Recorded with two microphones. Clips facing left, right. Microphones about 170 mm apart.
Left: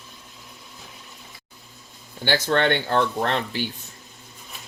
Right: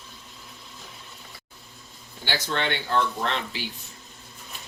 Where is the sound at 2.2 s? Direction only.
55° left (ahead or behind).